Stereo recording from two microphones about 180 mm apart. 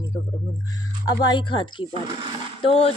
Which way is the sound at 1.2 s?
25° left (ahead or behind).